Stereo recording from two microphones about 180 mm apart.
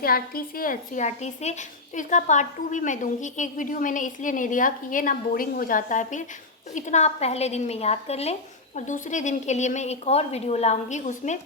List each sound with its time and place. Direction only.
0.0 s a woman's voice: 55° left (ahead or behind)